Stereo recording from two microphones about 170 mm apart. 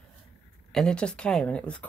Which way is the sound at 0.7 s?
5° left (ahead or behind).